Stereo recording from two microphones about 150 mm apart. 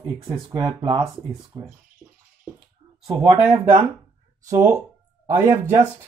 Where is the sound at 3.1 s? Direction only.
40° right (ahead or behind).